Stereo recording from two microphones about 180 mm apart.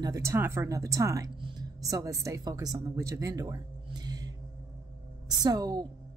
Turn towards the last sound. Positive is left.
turn(degrees=-20)  # may be behind; listen again after turning